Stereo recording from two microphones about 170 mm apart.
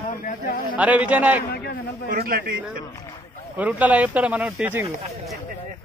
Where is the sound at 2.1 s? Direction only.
60° right (ahead or behind).